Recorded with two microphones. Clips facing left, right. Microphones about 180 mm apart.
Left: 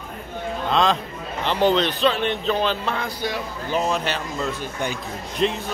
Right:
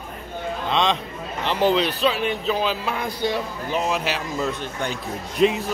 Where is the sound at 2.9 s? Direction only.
20° right (ahead or behind).